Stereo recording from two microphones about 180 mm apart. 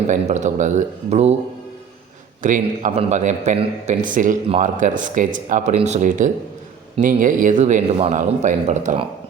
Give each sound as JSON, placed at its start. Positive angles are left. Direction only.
{"t": 0.1, "sound": "speech", "side_deg": -40}
{"t": 2.4, "sound": "speech", "side_deg": -45}